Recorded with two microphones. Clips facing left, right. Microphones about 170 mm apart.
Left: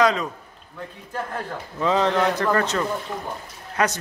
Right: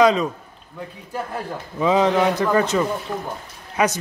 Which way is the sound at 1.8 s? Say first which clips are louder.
Right 3 dB; 10° right (ahead or behind).